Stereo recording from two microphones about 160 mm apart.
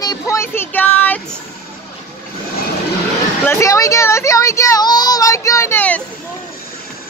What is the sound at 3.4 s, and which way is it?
Speech, 20° left (ahead or behind).